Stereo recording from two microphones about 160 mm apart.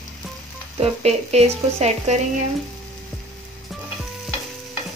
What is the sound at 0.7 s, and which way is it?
Speech, 40° right (ahead or behind).